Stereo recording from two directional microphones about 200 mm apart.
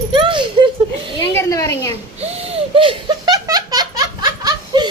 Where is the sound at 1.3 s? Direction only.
15° left (ahead or behind).